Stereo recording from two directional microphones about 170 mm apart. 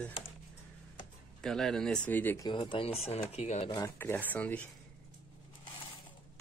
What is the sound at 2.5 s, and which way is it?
Speech, 30° left (ahead or behind).